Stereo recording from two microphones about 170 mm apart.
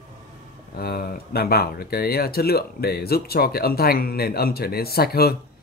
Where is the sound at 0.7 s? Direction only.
65° left (ahead or behind).